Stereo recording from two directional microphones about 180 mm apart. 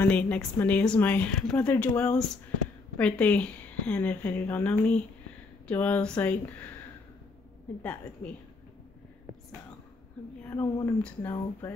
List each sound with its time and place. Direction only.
0.0 s a woman's voice: 10° left (ahead or behind)
7.8 s a woman's voice: 10° left (ahead or behind)
10.5 s speech: 20° left (ahead or behind)
11.0 s speech: 5° left (ahead or behind)